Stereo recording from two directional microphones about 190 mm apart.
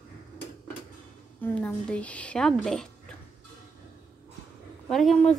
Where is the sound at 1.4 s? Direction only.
10° left (ahead or behind).